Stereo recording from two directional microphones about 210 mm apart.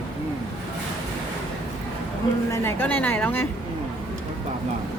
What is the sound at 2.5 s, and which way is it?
A woman's voice, 10° left (ahead or behind).